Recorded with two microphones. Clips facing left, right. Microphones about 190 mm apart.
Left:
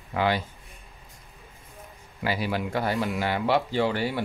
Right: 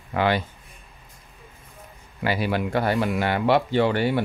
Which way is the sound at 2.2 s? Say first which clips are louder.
Right 4 dB; 65° right (ahead or behind).